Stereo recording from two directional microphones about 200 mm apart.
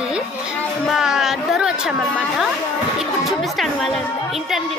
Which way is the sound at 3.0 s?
Centre (ahead or behind).